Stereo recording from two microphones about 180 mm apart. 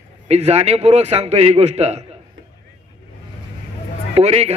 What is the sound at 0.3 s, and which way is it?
A man's voice, 35° right (ahead or behind).